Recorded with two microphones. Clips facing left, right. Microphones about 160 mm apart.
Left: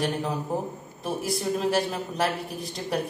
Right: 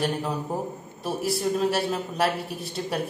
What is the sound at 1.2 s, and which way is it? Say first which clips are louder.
A man's voice: right 3 dB; 30° right (ahead or behind).